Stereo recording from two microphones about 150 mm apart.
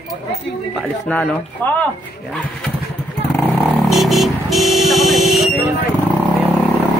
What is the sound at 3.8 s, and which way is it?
Vehicle, centre (ahead or behind).